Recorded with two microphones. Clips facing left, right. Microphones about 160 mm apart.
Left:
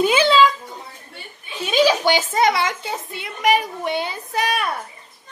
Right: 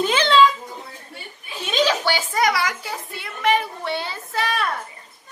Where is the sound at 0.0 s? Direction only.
10° left (ahead or behind).